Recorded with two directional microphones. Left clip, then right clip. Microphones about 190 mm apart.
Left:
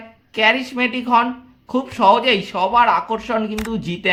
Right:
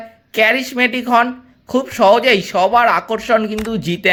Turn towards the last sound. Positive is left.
turn(degrees=-20)  # may be behind; listen again after turning